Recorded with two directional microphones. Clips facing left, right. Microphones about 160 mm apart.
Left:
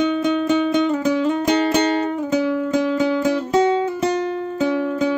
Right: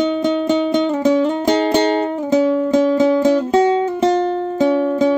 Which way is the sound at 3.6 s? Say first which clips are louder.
Right 3 dB; 30° right (ahead or behind).